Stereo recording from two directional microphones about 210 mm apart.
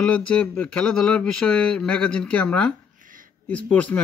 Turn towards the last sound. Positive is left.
turn(degrees=5)  # may be behind; listen again after turning